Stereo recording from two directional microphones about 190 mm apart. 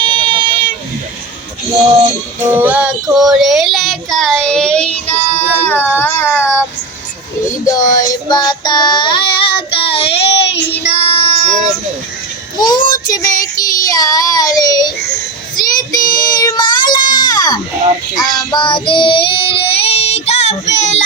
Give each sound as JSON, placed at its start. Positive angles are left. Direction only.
{"t": 0.0, "sound": "vehicle", "side_deg": -25}
{"t": 2.5, "sound": "child singing", "side_deg": -10}
{"t": 7.6, "sound": "speech", "side_deg": 20}
{"t": 8.3, "sound": "child singing", "side_deg": 20}
{"t": 12.5, "sound": "child singing", "side_deg": 20}